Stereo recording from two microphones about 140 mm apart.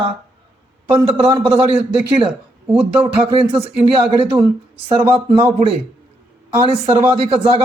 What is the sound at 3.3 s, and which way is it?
A man's voice, 40° right (ahead or behind).